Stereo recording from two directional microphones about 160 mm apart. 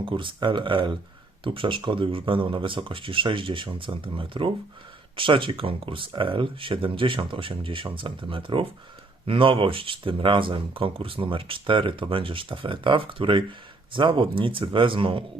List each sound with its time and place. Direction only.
0.0 s speech: 30° right (ahead or behind)